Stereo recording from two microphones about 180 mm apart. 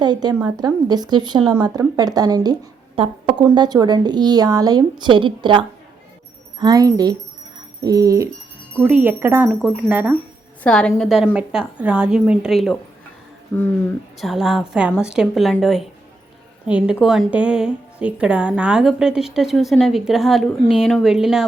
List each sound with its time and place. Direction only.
0.0 s a woman's voice: 25° right (ahead or behind)
8.7 s wind chime: 10° right (ahead or behind)
9.5 s a woman's voice: centre (ahead or behind)
9.9 s wind chime: 10° right (ahead or behind)
10.6 s a woman's voice: 5° left (ahead or behind)
14.2 s a woman's voice: centre (ahead or behind)